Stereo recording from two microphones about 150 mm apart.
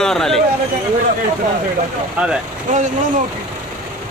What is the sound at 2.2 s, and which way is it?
Speech, 10° right (ahead or behind).